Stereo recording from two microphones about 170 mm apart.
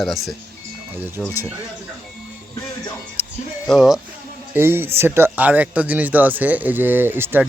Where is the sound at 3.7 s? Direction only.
Centre (ahead or behind).